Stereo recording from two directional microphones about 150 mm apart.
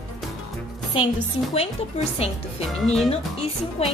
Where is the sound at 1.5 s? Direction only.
40° left (ahead or behind).